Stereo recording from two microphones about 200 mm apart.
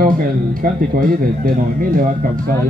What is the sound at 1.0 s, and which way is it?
Speech, 45° right (ahead or behind).